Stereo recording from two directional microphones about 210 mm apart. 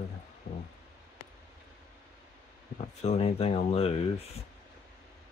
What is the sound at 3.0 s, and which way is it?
Speech, 30° left (ahead or behind).